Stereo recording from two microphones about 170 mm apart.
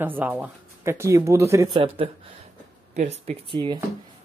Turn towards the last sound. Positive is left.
turn(degrees=-30)  # may be behind; listen again after turning